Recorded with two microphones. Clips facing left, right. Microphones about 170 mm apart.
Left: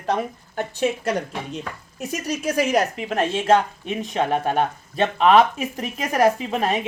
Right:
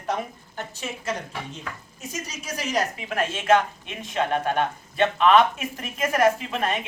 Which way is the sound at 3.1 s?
30° left (ahead or behind).